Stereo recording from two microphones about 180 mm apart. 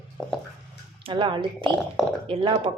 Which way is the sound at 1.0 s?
30° right (ahead or behind).